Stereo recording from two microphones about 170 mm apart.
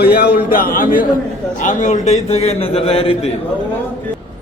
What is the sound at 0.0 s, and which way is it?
A man's voice, 70° left (ahead or behind).